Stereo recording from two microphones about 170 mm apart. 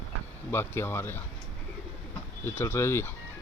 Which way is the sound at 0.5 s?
15° left (ahead or behind).